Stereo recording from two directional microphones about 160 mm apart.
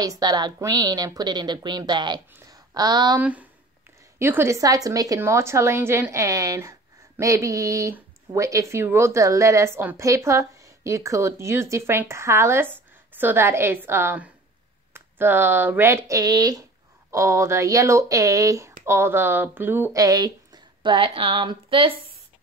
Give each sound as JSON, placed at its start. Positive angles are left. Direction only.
{"t": 0.0, "sound": "speech", "side_deg": -25}
{"t": 3.2, "sound": "speech", "side_deg": -10}